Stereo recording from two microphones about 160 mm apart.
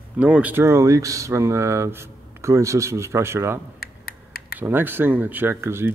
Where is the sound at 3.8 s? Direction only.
70° left (ahead or behind).